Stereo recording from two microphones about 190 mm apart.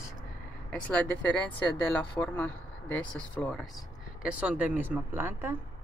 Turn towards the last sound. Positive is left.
turn(degrees=-10)  # may be behind; listen again after turning